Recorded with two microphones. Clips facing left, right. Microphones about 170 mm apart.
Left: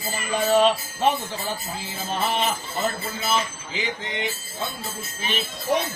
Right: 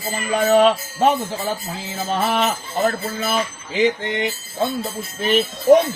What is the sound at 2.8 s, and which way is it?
Music, 55° right (ahead or behind).